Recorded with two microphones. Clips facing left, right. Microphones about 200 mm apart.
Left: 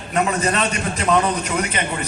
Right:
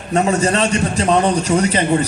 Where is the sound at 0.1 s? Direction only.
30° right (ahead or behind).